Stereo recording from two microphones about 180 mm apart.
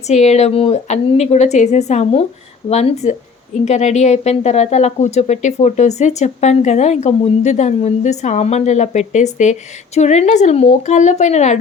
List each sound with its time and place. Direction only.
0.1 s speech: 40° left (ahead or behind)